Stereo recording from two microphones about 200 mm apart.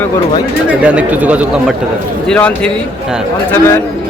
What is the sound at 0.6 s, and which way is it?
Speech, 5° right (ahead or behind).